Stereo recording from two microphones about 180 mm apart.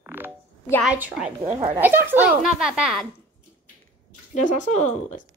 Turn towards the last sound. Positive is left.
turn(degrees=40)  # may be behind; listen again after turning